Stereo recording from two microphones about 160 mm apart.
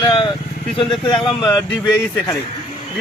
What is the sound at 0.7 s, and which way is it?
Speech, 35° left (ahead or behind).